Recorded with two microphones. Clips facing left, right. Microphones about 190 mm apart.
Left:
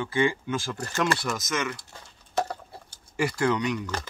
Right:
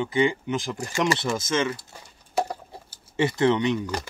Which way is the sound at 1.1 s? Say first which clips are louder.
Right 5 dB; 25° right (ahead or behind).